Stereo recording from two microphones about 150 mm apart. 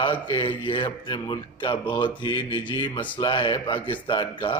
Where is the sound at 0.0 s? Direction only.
35° left (ahead or behind).